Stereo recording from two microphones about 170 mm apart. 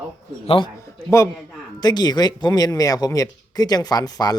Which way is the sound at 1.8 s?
25° left (ahead or behind).